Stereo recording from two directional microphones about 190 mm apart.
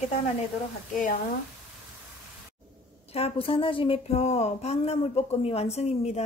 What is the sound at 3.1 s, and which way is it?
Speech, 30° left (ahead or behind).